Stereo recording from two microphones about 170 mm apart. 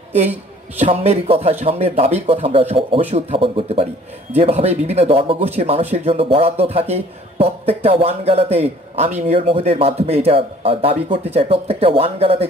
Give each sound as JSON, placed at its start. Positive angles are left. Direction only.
{"t": 0.7, "sound": "a man's voice", "side_deg": -40}